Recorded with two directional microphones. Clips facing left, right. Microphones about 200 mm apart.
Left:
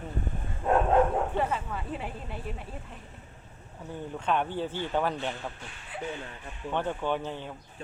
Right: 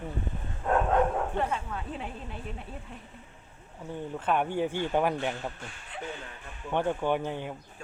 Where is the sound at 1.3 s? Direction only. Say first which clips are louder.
Left 1 dB; 5° left (ahead or behind).